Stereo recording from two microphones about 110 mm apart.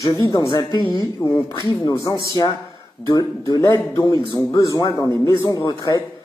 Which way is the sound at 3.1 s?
40° left (ahead or behind).